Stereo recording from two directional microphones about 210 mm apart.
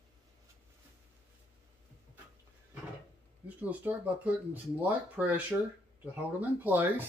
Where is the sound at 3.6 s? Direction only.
5° right (ahead or behind).